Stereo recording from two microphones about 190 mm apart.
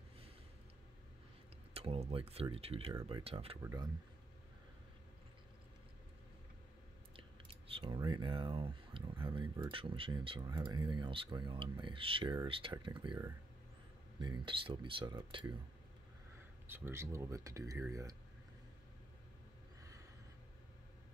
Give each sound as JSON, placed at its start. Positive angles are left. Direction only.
{"t": 1.7, "sound": "speech", "side_deg": -30}
{"t": 2.9, "sound": "speech", "side_deg": -20}
{"t": 3.6, "sound": "speech", "side_deg": -20}
{"t": 7.2, "sound": "a sound", "side_deg": -30}
{"t": 9.2, "sound": "speech", "side_deg": -25}
{"t": 16.6, "sound": "speech", "side_deg": -10}